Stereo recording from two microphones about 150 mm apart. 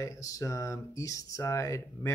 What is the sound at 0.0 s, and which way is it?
Speech, 20° left (ahead or behind).